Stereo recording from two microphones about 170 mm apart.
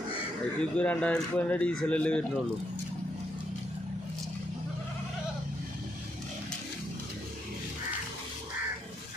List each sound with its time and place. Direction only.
0.6 s speech: 5° left (ahead or behind)